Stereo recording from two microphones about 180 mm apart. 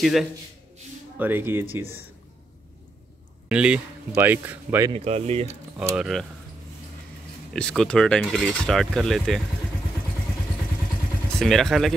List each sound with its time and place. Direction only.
0.0 s speech: centre (ahead or behind)
3.4 s speech: 5° right (ahead or behind)
4.9 s speech: 35° right (ahead or behind)
5.8 s speech: 5° right (ahead or behind)
7.5 s speech: 5° left (ahead or behind)
11.3 s speech: centre (ahead or behind)